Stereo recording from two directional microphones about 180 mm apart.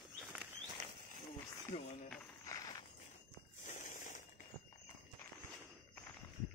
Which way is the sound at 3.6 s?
45° left (ahead or behind).